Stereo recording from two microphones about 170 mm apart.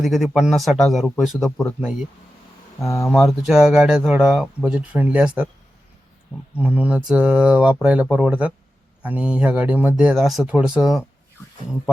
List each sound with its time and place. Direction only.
0.0 s speech: centre (ahead or behind)
1.5 s speech: 15° left (ahead or behind)
1.8 s speech: 5° right (ahead or behind)
2.8 s speech: 15° left (ahead or behind)
3.1 s speech: centre (ahead or behind)
6.6 s speech: 5° right (ahead or behind)